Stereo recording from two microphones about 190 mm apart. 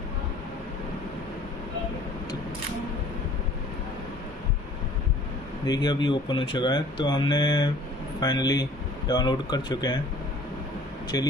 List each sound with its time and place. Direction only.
5.7 s speech: 20° left (ahead or behind)
11.1 s speech: 20° left (ahead or behind)